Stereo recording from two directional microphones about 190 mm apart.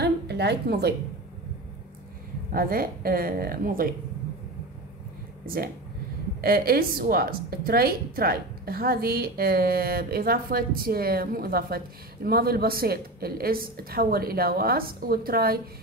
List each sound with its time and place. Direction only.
0.0 s a sound: 60° right (ahead or behind)
2.5 s a woman's voice: 50° right (ahead or behind)
5.4 s a woman's voice: 50° right (ahead or behind)